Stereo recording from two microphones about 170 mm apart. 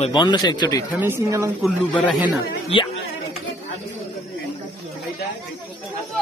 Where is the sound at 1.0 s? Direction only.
15° right (ahead or behind).